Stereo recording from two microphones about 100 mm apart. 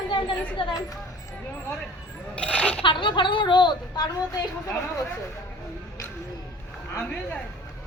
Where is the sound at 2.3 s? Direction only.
10° left (ahead or behind).